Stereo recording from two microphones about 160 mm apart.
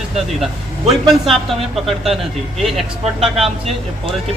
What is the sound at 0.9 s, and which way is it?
A man's voice, centre (ahead or behind).